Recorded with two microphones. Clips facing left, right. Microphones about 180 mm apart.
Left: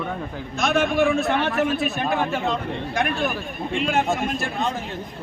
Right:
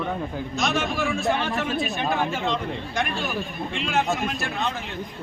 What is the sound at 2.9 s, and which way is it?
A man's voice, 55° left (ahead or behind).